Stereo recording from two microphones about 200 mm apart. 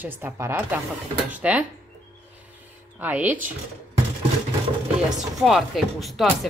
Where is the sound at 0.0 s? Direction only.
10° right (ahead or behind).